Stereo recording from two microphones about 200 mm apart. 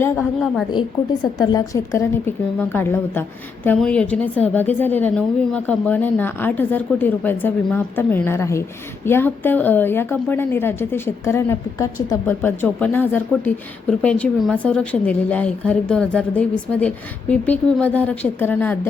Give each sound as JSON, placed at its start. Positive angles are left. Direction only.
{"t": 0.7, "sound": "a woman's voice", "side_deg": 20}